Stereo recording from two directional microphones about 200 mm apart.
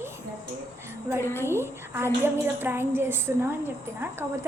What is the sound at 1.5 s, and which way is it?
A woman's voice, 10° right (ahead or behind).